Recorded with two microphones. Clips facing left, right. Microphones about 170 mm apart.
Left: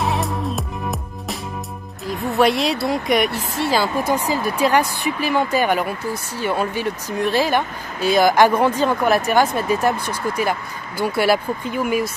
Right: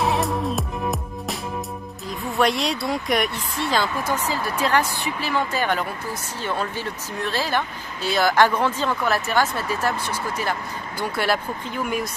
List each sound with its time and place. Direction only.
0.0 s music: centre (ahead or behind)
2.0 s speech: centre (ahead or behind)